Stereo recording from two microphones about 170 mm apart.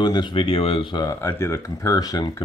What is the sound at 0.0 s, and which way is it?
Speech, 25° left (ahead or behind).